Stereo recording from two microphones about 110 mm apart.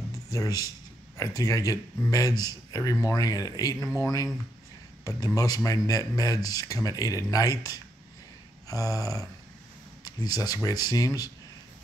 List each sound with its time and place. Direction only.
0.3 s speech: 35° left (ahead or behind)